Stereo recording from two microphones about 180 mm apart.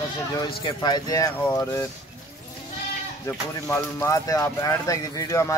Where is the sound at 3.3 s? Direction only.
15° left (ahead or behind).